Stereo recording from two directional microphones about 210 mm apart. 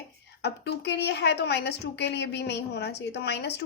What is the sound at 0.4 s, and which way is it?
A woman's voice, 50° left (ahead or behind).